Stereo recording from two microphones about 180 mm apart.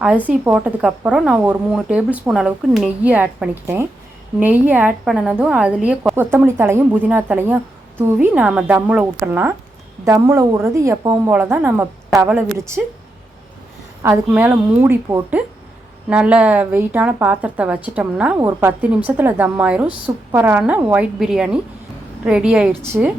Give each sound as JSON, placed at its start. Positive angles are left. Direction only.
{"t": 0.3, "sound": "a woman's voice", "side_deg": -10}
{"t": 14.0, "sound": "a woman's voice", "side_deg": -15}